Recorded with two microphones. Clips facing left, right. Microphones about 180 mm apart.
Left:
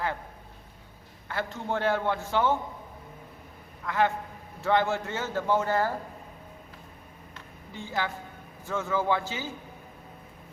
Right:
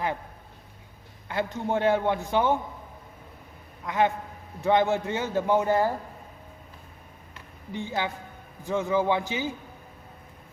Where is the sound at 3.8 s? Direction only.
20° right (ahead or behind).